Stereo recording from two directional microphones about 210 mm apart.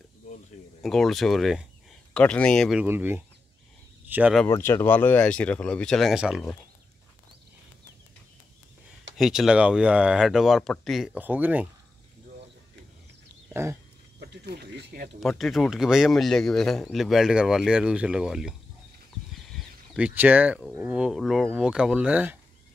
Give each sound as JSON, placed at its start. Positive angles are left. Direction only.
{"t": 0.8, "sound": "speech", "side_deg": 0}
{"t": 4.5, "sound": "speech", "side_deg": 10}
{"t": 9.2, "sound": "speech", "side_deg": 0}
{"t": 13.5, "sound": "a sound", "side_deg": -10}
{"t": 14.3, "sound": "speech", "side_deg": -50}
{"t": 15.1, "sound": "speech", "side_deg": 0}
{"t": 19.3, "sound": "a sound", "side_deg": 0}
{"t": 20.7, "sound": "speech", "side_deg": -10}